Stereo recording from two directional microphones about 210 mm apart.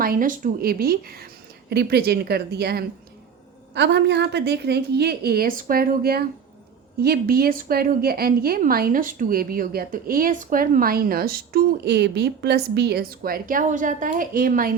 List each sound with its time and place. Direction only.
0.0 s a woman's voice: 40° right (ahead or behind)